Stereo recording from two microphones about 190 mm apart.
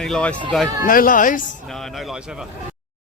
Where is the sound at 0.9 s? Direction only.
45° left (ahead or behind).